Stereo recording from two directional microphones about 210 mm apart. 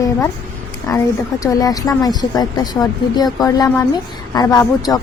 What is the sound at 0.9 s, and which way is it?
A woman's voice, 15° left (ahead or behind).